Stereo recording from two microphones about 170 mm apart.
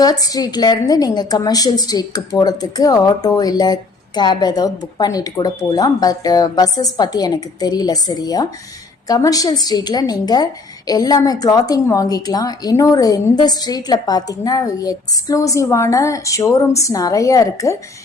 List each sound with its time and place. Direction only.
0.0 s a woman's voice: 20° left (ahead or behind)